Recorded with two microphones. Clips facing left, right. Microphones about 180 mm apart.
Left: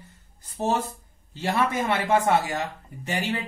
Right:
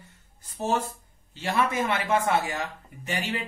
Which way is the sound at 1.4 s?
40° left (ahead or behind).